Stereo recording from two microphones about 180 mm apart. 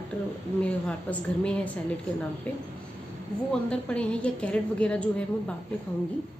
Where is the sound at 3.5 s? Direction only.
5° left (ahead or behind).